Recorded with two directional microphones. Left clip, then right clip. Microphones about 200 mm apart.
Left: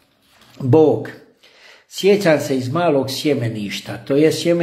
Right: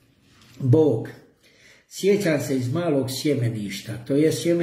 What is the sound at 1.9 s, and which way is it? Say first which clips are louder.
Speech: left 7 dB; 15° right (ahead or behind).